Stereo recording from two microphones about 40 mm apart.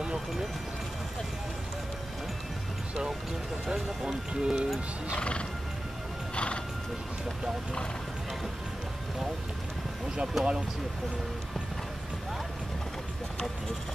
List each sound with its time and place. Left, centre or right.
4.3 s speech: right
5.1 s speech: left
6.3 s horse: left
10.4 s speech: centre